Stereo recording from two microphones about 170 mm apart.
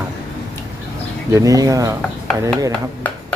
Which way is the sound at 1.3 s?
20° right (ahead or behind).